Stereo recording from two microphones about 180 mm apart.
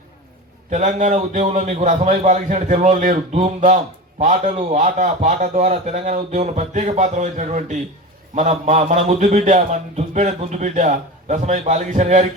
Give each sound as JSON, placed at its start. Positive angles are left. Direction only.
{"t": 0.7, "sound": "a man's voice", "side_deg": -40}